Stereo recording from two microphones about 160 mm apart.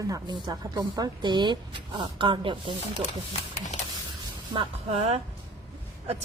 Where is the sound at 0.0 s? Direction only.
20° right (ahead or behind).